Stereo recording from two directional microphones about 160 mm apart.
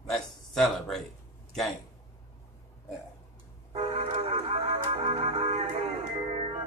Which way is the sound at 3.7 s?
40° right (ahead or behind).